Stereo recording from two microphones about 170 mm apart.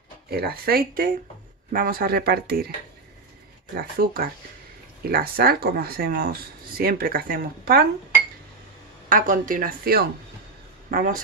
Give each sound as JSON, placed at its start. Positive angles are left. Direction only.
{"t": 0.3, "sound": "speech", "side_deg": -65}
{"t": 3.7, "sound": "speech", "side_deg": -60}
{"t": 9.1, "sound": "speech", "side_deg": -50}